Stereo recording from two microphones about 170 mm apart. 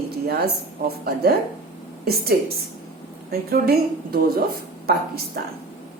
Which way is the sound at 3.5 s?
60° right (ahead or behind).